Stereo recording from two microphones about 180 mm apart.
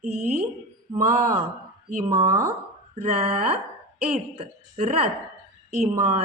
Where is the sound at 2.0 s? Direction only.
15° right (ahead or behind).